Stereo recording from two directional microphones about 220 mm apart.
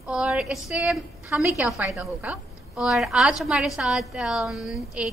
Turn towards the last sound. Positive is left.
turn(degrees=0)  # may be behind; listen again after turning